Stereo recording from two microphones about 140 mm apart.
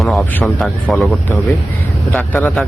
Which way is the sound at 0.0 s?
Centre (ahead or behind).